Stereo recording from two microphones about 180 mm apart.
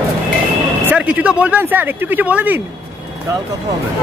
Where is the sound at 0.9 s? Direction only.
5° right (ahead or behind).